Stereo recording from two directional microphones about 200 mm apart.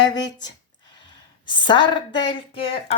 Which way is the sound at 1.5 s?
25° left (ahead or behind).